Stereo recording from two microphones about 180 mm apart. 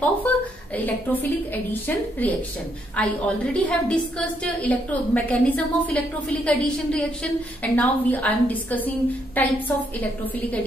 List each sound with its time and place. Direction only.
0.3 s a woman's voice: 10° left (ahead or behind)